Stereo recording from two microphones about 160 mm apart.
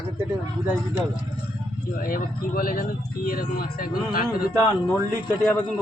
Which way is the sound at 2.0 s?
60° left (ahead or behind).